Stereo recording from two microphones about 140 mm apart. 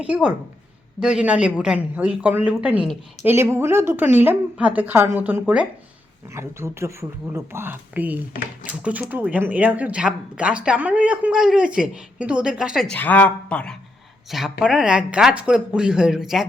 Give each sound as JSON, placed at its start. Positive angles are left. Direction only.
{"t": 0.0, "sound": "speech", "side_deg": -5}
{"t": 12.9, "sound": "speech", "side_deg": 10}
{"t": 14.3, "sound": "speech", "side_deg": 0}